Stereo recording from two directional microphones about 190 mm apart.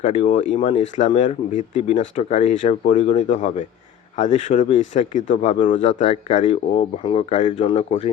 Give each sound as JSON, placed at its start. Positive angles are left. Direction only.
{"t": 0.0, "sound": "speech", "side_deg": 40}